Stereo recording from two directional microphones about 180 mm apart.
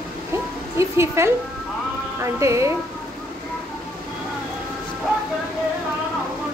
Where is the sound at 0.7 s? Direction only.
15° right (ahead or behind).